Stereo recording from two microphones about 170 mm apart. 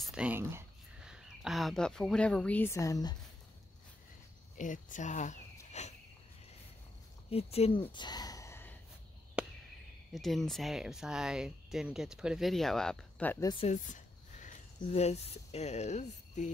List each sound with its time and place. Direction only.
0.0 s speech: 5° right (ahead or behind)
1.0 s speech: 5° right (ahead or behind); by 3.2 s 20° left (ahead or behind)
4.6 s speech: 50° left (ahead or behind)
7.2 s speech: 35° left (ahead or behind)
7.9 s a sound: 25° left (ahead or behind)
9.4 s chop: 5° right (ahead or behind)
10.1 s speech: centre (ahead or behind)
13.7 s speech: 45° left (ahead or behind)